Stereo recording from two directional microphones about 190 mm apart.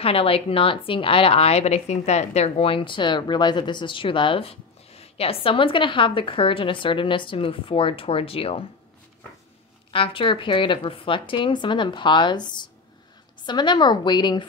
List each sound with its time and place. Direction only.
0.0 s a woman's voice: 30° left (ahead or behind)
9.9 s a woman's voice: 30° left (ahead or behind)